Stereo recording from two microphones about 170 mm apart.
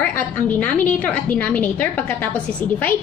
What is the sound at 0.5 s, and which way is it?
A woman's voice, 10° left (ahead or behind).